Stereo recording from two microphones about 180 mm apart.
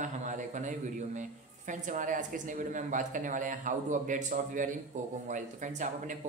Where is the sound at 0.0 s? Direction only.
45° right (ahead or behind).